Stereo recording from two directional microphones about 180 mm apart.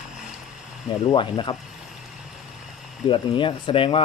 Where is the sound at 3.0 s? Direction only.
30° left (ahead or behind).